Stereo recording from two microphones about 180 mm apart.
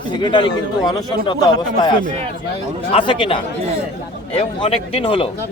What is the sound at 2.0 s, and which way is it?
Speech, 35° right (ahead or behind).